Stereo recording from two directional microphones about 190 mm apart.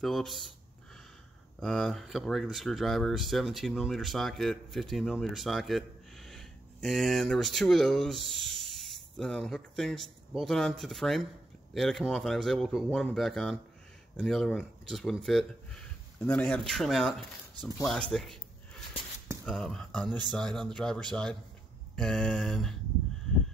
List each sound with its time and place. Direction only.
0.0 s speech: centre (ahead or behind)
1.6 s speech: 5° left (ahead or behind)
19.4 s speech: 5° left (ahead or behind)